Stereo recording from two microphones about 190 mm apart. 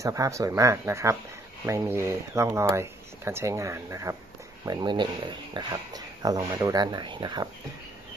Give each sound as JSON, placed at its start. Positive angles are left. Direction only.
{"t": 0.0, "sound": "speech", "side_deg": -15}